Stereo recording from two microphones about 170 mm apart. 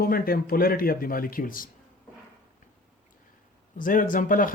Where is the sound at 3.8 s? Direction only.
50° left (ahead or behind).